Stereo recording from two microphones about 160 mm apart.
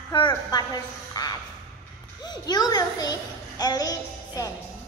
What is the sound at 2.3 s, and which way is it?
Child singing, 25° left (ahead or behind).